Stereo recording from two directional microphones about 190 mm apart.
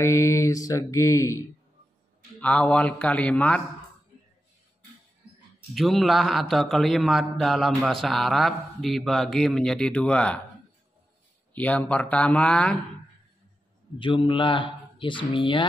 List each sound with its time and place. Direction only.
0.0 s mantra: 15° left (ahead or behind)
2.4 s mantra: 5° left (ahead or behind)
5.8 s a man's voice: centre (ahead or behind)
11.5 s mantra: 10° left (ahead or behind)
13.9 s speech: 25° left (ahead or behind)